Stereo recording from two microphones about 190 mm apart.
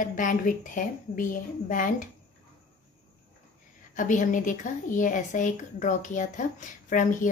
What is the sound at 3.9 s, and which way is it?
Speech, 45° left (ahead or behind).